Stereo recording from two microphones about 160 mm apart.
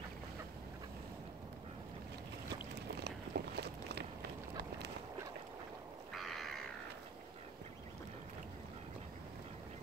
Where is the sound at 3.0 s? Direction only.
90° right.